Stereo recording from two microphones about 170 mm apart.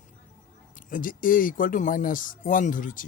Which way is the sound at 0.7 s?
55° left (ahead or behind).